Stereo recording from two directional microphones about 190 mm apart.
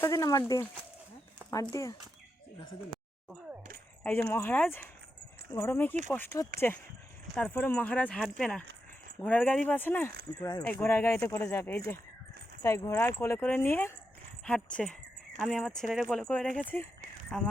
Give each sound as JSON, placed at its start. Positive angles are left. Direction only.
{"t": 0.0, "sound": "speech", "side_deg": 15}
{"t": 4.0, "sound": "speech", "side_deg": 10}